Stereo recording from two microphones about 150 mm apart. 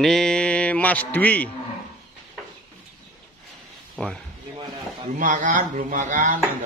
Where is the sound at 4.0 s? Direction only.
Centre (ahead or behind).